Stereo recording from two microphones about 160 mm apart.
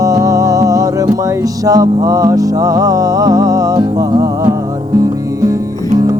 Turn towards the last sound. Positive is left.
turn(degrees=-25)  # may be behind; listen again after turning